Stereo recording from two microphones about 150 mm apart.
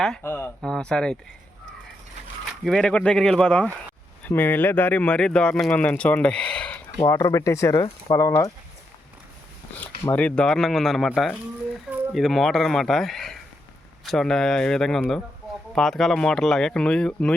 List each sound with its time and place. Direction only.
0.2 s speech: 15° left (ahead or behind)
0.6 s speech: 5° left (ahead or behind)
2.6 s speech: 5° left (ahead or behind)
7.0 s speech: 25° left (ahead or behind)
9.7 s speech: 10° left (ahead or behind)